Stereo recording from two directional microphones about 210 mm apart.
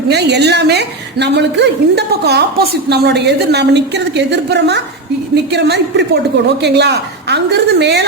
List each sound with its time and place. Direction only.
0.1 s a woman's voice: 50° right (ahead or behind)